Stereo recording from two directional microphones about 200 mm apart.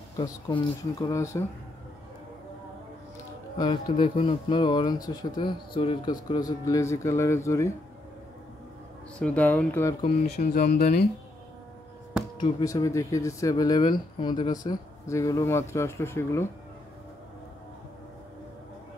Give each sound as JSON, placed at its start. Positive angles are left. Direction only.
{"t": 0.2, "sound": "speech", "side_deg": 20}
{"t": 3.5, "sound": "speech", "side_deg": 20}
{"t": 9.2, "sound": "speech", "side_deg": 10}
{"t": 10.3, "sound": "speech", "side_deg": 50}
{"t": 12.4, "sound": "speech", "side_deg": 20}